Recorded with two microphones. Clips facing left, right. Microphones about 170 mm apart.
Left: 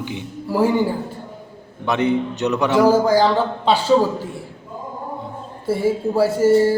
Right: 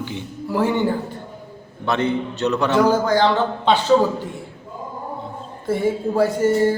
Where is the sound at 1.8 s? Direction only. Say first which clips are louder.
Left 2 dB; 15° left (ahead or behind).